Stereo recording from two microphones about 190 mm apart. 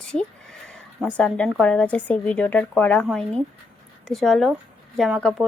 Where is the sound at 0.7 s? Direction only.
5° left (ahead or behind).